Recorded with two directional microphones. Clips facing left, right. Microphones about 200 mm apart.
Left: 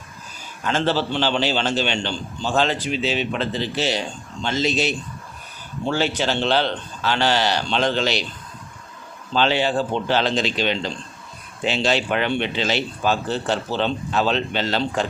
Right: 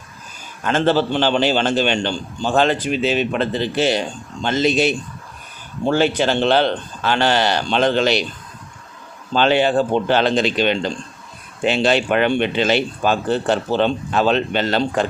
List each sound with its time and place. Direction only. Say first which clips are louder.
0.6 s speech: right 5 dB; 50° right (ahead or behind)
9.3 s speech: right 4 dB; 50° right (ahead or behind)